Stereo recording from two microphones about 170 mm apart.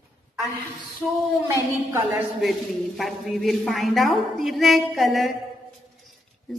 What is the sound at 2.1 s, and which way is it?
A man's voice, centre (ahead or behind).